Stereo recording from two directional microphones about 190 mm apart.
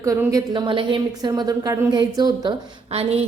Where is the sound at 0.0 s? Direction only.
15° right (ahead or behind).